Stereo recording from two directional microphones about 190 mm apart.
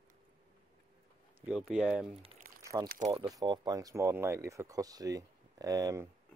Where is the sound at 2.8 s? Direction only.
45° right (ahead or behind).